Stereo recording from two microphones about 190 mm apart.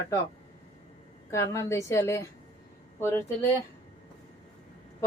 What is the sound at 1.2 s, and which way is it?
A woman's voice, 15° left (ahead or behind).